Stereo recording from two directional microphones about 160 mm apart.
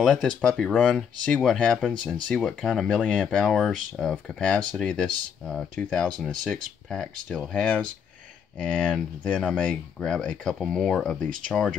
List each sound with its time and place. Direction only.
0.0 s speech: centre (ahead or behind)